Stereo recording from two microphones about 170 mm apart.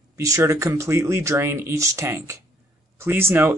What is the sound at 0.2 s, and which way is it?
Speech, 20° right (ahead or behind).